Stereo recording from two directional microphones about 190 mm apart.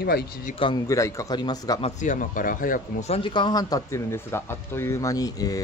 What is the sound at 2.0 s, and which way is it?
Speech, 40° left (ahead or behind).